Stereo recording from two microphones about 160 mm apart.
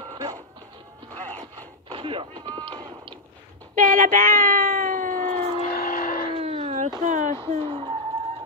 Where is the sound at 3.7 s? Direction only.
55° right (ahead or behind).